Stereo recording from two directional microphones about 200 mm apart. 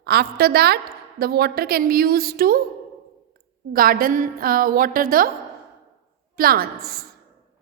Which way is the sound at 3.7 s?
45° right (ahead or behind).